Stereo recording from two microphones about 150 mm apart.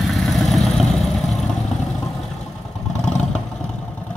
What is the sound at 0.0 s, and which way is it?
Vehicle, centre (ahead or behind).